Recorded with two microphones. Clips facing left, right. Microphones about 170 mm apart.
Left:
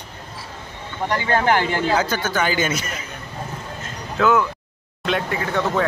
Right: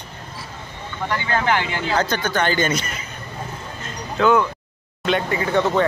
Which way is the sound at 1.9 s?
10° left (ahead or behind).